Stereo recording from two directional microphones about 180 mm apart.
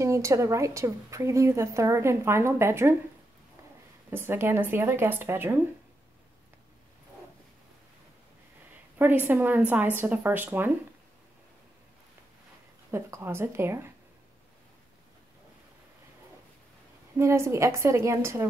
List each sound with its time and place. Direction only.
0.0 s a woman's voice: 15° right (ahead or behind)
4.1 s a woman's voice: 10° right (ahead or behind)
8.9 s a woman's voice: 10° right (ahead or behind)
12.9 s a woman's voice: 15° right (ahead or behind)
17.2 s a woman's voice: 15° right (ahead or behind)